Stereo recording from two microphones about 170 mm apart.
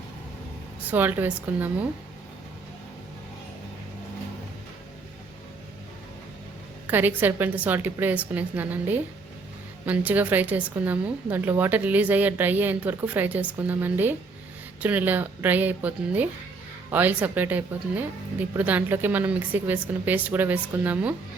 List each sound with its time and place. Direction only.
0.9 s a woman's voice: 10° right (ahead or behind)
6.8 s a woman's voice: 10° right (ahead or behind)